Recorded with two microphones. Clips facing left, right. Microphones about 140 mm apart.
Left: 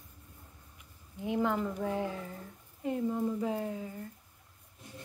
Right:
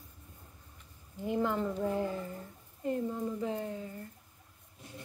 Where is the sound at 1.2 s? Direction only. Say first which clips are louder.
Left 1 dB; 5° left (ahead or behind).